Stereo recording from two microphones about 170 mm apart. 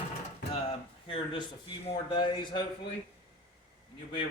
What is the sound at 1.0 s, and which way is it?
Mantra, 30° left (ahead or behind).